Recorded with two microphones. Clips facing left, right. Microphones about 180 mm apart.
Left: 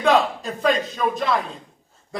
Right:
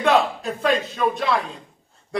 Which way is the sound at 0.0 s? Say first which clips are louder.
Even; centre (ahead or behind).